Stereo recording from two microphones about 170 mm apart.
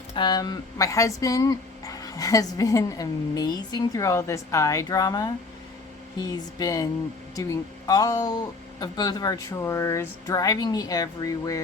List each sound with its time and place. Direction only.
0.2 s speech: 25° left (ahead or behind)